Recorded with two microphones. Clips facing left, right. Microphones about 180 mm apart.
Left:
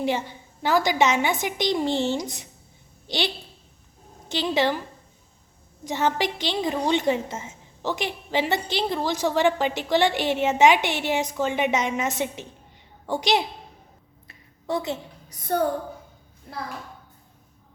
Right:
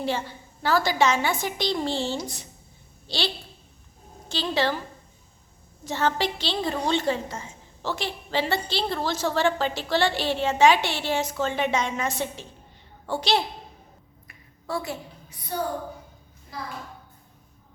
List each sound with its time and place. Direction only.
0.0 s a woman's voice: 15° left (ahead or behind)
5.8 s a woman's voice: 15° left (ahead or behind)
14.3 s a sound: 20° left (ahead or behind)
15.3 s a woman's voice: 50° left (ahead or behind)
16.5 s speech: 60° left (ahead or behind)